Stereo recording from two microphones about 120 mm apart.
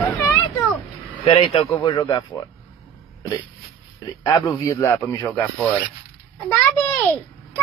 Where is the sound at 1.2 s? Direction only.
45° left (ahead or behind).